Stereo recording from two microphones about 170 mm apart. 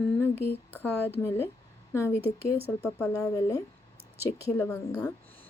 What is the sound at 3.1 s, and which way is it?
A woman's voice, 20° left (ahead or behind).